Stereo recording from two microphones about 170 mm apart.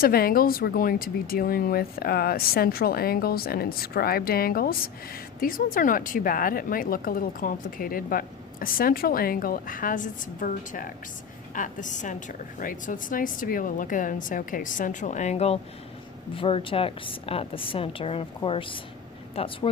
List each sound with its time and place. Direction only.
0.0 s a woman's voice: 60° left (ahead or behind); by 19.5 s 35° left (ahead or behind)